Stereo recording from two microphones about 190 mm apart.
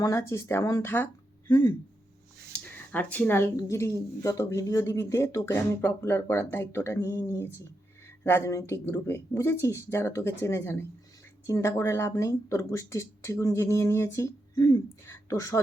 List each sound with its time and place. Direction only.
0.0 s speech: 15° left (ahead or behind)
2.9 s speech: 10° left (ahead or behind)